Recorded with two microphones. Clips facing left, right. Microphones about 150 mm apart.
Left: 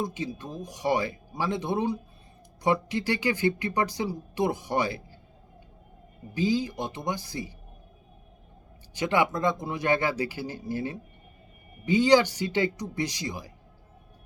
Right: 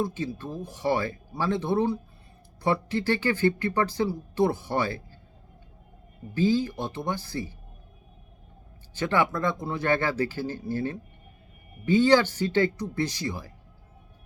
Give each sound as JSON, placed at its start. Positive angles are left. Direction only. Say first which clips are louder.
{"t": 0.0, "sound": "speech", "louder": "right 2 dB", "side_deg": 15}
{"t": 6.3, "sound": "speech", "louder": "right 2 dB", "side_deg": 15}
{"t": 9.0, "sound": "speech", "louder": "even", "side_deg": 15}